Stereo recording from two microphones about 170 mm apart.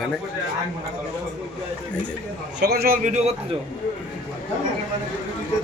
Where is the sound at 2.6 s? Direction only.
65° right (ahead or behind).